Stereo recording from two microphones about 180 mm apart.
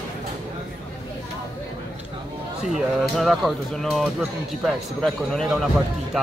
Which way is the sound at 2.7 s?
Centre (ahead or behind).